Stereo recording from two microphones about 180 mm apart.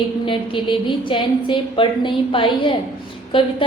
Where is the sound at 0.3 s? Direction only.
30° left (ahead or behind).